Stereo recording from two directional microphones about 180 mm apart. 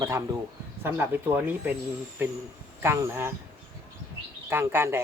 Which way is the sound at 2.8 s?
15° right (ahead or behind).